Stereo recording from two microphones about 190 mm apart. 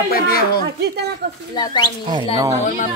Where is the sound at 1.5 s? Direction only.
25° left (ahead or behind).